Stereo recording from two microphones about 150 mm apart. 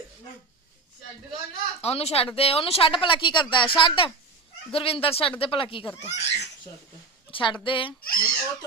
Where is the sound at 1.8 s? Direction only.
45° left (ahead or behind).